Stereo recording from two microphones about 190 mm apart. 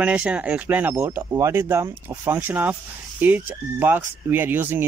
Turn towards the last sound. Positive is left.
turn(degrees=-10)  # may be behind; listen again after turning